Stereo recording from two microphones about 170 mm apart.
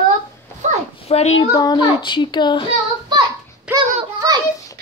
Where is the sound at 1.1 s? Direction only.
40° left (ahead or behind).